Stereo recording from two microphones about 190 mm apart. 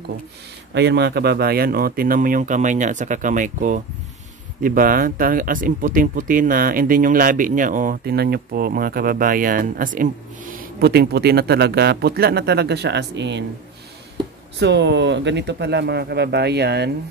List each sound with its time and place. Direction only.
0.7 s speech: 65° right (ahead or behind)
14.6 s speech: 65° right (ahead or behind)